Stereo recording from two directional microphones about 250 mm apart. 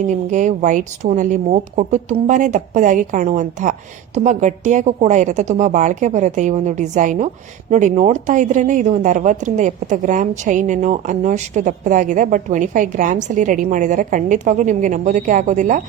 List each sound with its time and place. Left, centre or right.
0.1 s speech: right